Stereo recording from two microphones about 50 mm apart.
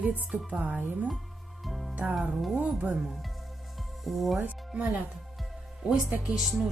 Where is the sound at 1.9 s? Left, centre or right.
Right.